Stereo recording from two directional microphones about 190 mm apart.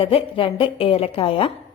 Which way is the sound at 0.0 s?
30° left (ahead or behind).